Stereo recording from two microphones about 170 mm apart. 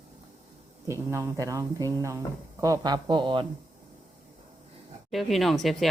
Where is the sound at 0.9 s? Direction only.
15° right (ahead or behind).